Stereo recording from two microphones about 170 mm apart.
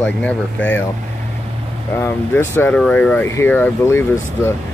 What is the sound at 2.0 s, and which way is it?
Speech, 15° left (ahead or behind).